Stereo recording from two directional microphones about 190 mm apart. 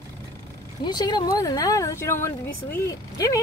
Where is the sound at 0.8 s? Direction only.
20° left (ahead or behind).